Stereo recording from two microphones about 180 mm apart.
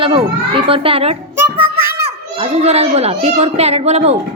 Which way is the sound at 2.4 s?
35° right (ahead or behind).